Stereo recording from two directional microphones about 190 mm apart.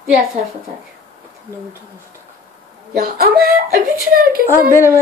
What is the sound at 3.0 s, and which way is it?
Speech, 50° right (ahead or behind).